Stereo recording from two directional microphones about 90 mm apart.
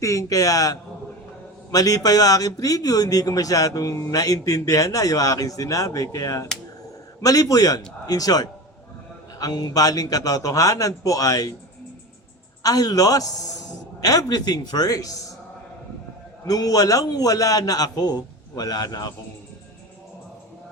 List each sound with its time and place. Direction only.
0.0 s a man's voice: 35° left (ahead or behind)
12.6 s a man's voice: 45° left (ahead or behind)
16.5 s a man's voice: 45° left (ahead or behind)